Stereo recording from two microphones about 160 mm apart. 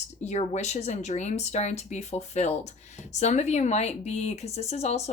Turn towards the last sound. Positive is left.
turn(degrees=45)  # may be behind; listen again after turning